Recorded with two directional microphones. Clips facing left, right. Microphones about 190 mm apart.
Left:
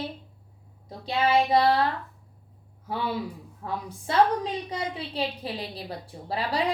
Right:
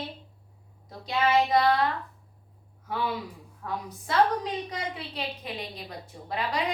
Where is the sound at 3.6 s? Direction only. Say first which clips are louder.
Left 2 dB; 25° left (ahead or behind).